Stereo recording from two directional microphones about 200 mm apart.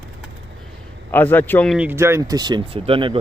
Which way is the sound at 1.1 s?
10° left (ahead or behind).